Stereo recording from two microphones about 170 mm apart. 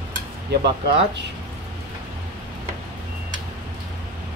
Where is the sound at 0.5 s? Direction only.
75° right (ahead or behind).